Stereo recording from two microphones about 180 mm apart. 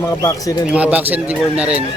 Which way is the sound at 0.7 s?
10° right (ahead or behind).